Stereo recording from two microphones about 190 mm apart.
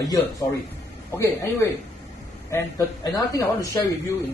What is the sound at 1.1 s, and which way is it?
Speech, 15° left (ahead or behind).